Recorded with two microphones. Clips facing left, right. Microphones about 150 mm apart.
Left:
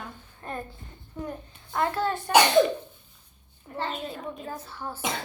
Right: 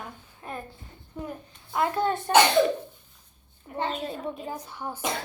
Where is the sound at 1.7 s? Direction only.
15° right (ahead or behind).